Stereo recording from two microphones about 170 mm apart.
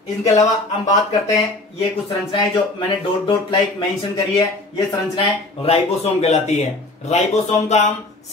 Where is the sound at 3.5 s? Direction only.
20° left (ahead or behind).